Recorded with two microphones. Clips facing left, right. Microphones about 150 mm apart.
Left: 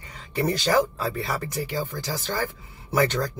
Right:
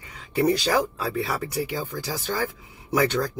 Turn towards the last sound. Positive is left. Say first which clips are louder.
# right 1 dB
turn(degrees=-10)  # may be behind; listen again after turning